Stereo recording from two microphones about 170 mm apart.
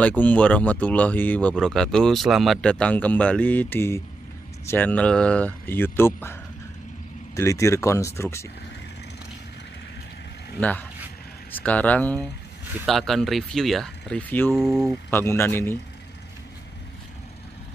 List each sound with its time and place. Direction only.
0.0 s speech: 10° left (ahead or behind)
7.3 s speech: 15° left (ahead or behind)
10.6 s speech: 10° left (ahead or behind)
14.5 s speech: 5° right (ahead or behind)
15.0 s speech: 15° left (ahead or behind)